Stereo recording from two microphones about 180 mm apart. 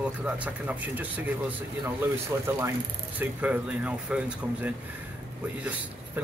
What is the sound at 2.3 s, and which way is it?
Speech, 15° right (ahead or behind).